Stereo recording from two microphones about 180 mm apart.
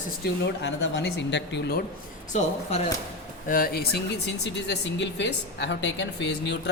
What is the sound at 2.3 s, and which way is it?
Speech, 40° left (ahead or behind).